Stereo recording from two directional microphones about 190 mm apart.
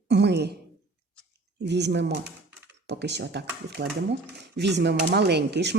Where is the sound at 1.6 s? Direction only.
65° right (ahead or behind).